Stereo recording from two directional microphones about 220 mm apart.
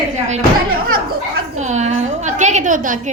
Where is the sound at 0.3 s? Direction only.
35° right (ahead or behind).